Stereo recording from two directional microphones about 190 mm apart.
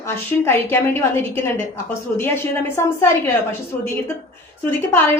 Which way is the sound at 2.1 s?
10° left (ahead or behind).